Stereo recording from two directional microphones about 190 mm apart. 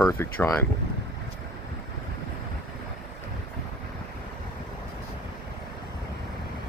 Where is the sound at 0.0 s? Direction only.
10° left (ahead or behind).